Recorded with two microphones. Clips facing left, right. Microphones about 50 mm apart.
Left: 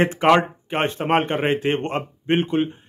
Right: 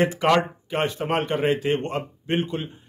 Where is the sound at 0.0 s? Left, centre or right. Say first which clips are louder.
Left 3 dB; left.